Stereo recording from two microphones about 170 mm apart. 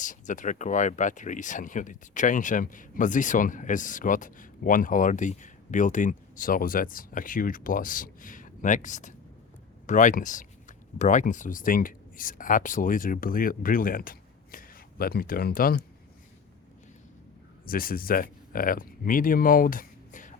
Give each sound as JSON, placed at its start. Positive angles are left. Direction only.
{"t": 0.0, "sound": "speech", "side_deg": 50}
{"t": 17.7, "sound": "speech", "side_deg": 60}